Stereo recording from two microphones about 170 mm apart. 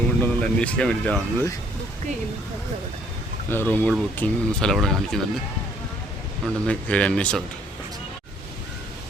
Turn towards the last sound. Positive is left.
turn(degrees=5)  # may be behind; listen again after turning